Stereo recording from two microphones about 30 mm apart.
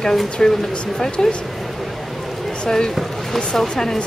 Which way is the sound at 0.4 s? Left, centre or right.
Centre.